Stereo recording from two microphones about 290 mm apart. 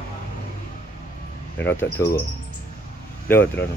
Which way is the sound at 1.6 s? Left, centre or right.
Centre.